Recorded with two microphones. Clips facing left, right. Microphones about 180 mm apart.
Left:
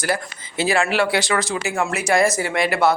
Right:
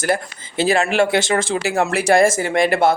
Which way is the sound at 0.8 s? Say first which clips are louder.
Right 3 dB; 45° right (ahead or behind).